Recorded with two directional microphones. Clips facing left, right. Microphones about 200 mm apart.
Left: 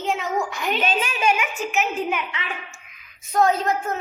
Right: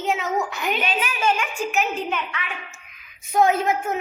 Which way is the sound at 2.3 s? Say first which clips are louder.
Left 1 dB; 20° left (ahead or behind).